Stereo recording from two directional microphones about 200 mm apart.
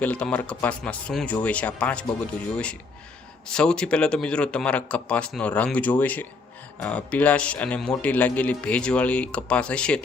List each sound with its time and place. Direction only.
0.0 s a man's voice: 5° left (ahead or behind)
3.5 s a man's voice: 5° left (ahead or behind)